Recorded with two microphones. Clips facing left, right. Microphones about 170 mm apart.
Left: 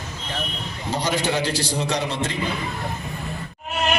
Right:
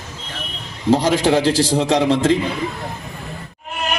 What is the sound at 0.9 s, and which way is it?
A man's voice, 90° right.